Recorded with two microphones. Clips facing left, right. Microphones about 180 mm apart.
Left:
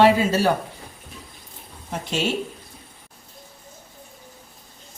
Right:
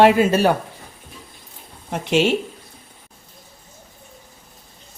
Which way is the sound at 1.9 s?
70° right (ahead or behind).